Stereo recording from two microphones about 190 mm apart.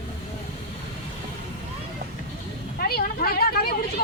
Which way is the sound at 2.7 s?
50° left (ahead or behind).